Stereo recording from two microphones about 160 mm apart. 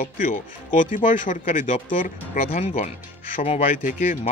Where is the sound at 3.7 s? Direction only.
55° left (ahead or behind).